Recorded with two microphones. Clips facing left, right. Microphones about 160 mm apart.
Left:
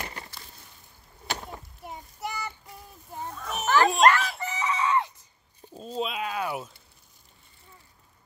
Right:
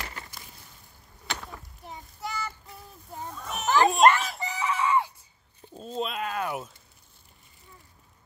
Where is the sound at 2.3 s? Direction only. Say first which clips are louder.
Right 1 dB; 20° left (ahead or behind).